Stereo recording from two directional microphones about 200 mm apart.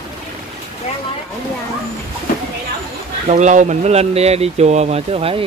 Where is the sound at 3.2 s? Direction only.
35° right (ahead or behind).